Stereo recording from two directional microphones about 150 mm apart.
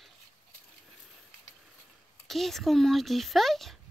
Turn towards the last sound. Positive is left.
turn(degrees=0)  # may be behind; listen again after turning